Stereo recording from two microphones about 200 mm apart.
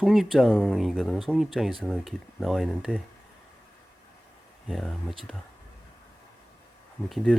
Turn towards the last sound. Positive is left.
turn(degrees=0)  # may be behind; listen again after turning